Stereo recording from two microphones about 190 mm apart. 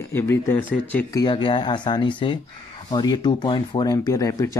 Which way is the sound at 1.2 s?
25° left (ahead or behind).